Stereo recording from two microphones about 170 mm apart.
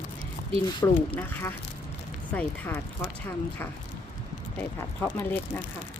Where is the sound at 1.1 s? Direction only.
15° left (ahead or behind).